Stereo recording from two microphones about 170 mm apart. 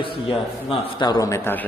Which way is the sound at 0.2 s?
35° left (ahead or behind).